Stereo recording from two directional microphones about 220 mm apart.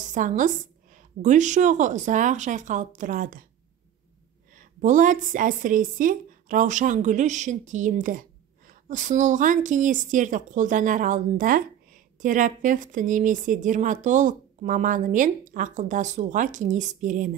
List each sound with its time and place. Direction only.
0.0 s speech: 35° right (ahead or behind)
4.6 s speech: 35° right (ahead or behind)